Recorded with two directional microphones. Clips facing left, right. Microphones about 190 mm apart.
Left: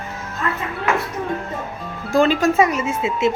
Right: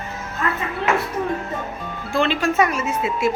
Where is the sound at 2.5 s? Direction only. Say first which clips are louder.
Left 2 dB; 25° left (ahead or behind).